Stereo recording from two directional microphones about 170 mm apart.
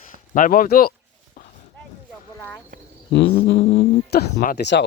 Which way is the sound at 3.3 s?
90° left.